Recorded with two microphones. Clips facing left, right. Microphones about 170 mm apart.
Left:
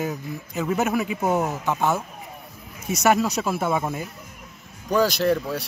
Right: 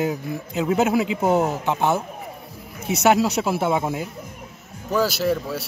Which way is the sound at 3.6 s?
10° right (ahead or behind).